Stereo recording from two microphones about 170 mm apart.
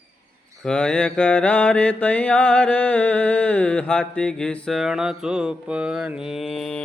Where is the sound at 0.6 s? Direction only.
5° left (ahead or behind).